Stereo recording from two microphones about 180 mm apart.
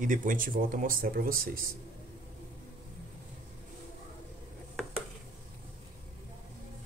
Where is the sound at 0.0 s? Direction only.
45° right (ahead or behind).